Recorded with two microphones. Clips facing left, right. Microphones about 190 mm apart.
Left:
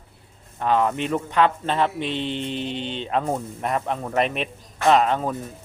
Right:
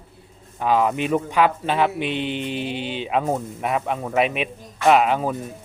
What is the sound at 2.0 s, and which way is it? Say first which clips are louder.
Mantra: right 2 dB; 30° left (ahead or behind).